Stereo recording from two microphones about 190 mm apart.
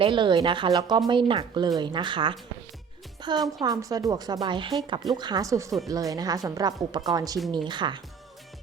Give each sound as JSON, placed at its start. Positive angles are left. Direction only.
{"t": 0.0, "sound": "speech", "side_deg": -25}